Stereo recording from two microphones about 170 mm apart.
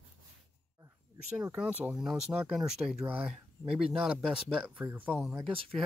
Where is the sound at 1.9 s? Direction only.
5° right (ahead or behind).